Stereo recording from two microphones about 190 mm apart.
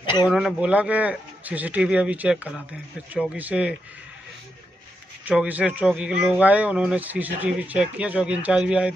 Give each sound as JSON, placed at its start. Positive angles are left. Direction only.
{"t": 0.0, "sound": "a sound", "side_deg": 25}
{"t": 0.3, "sound": "a man's voice", "side_deg": -5}
{"t": 5.2, "sound": "a man's voice", "side_deg": -5}